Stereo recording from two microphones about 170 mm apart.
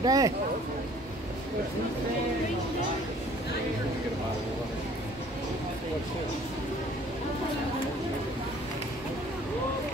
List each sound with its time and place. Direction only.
0.0 s speech: 20° right (ahead or behind)